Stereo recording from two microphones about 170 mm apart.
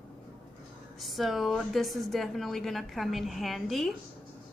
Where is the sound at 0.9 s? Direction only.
Centre (ahead or behind).